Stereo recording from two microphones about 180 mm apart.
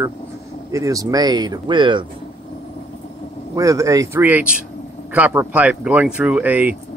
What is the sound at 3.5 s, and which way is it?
Speech, 20° right (ahead or behind).